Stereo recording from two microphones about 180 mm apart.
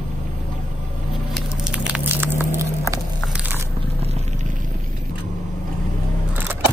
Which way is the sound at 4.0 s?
35° right (ahead or behind).